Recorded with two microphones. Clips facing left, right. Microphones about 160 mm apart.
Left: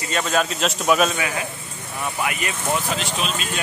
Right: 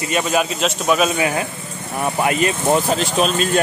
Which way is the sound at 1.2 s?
30° right (ahead or behind).